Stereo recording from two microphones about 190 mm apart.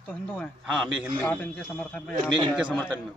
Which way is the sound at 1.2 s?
10° left (ahead or behind).